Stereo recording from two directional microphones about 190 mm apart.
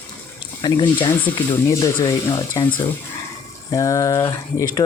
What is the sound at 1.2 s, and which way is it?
Speech, 15° left (ahead or behind).